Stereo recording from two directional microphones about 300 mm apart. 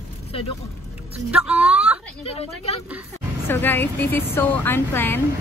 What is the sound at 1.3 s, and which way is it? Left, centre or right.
Speech, centre.